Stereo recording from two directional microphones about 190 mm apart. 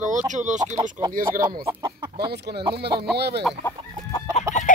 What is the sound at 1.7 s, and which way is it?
Chicken, 25° right (ahead or behind).